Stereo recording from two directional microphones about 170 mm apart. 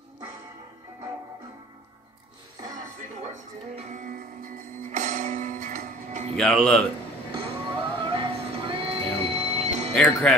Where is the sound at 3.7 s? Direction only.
50° right (ahead or behind).